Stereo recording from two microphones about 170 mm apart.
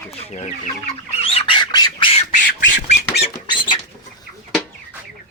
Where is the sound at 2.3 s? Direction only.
50° left (ahead or behind).